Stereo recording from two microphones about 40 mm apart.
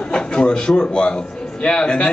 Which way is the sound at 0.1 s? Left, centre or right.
Left.